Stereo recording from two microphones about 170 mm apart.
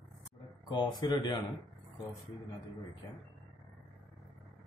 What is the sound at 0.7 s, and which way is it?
Speech, 25° left (ahead or behind).